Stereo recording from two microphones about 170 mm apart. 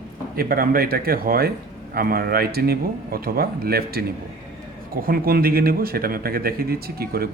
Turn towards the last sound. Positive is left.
turn(degrees=-65)  # may be behind; listen again after turning